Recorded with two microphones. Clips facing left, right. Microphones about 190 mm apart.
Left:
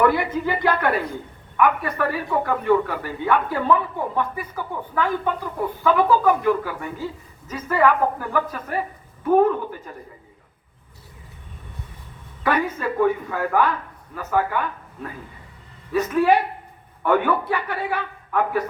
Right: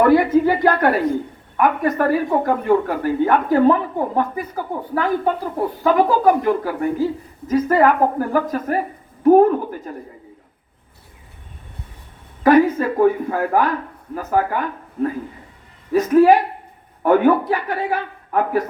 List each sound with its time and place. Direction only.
0.0 s speech: 45° right (ahead or behind)
13.0 s speech: 40° right (ahead or behind)
15.9 s speech: 40° right (ahead or behind)